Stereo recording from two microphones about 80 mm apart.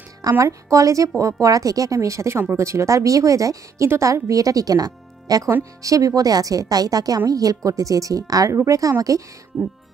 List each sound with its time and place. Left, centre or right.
0.2 s a woman's voice: right